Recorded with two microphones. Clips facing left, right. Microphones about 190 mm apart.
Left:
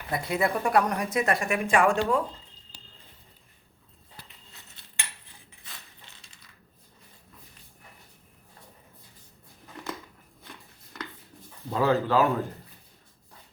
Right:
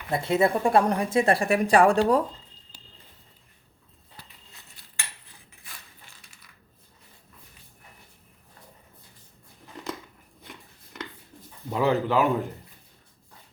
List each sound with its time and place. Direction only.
0.1 s a woman's voice: 25° right (ahead or behind)
4.8 s cutlery: 25° left (ahead or behind)
5.6 s mechanisms: 20° left (ahead or behind)
11.7 s speech: 15° right (ahead or behind)